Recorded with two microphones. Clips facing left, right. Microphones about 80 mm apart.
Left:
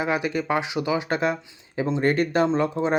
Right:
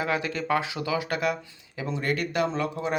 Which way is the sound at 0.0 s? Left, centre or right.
Centre.